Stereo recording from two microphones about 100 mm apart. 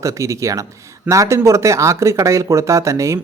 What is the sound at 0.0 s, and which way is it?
Speech, 30° right (ahead or behind).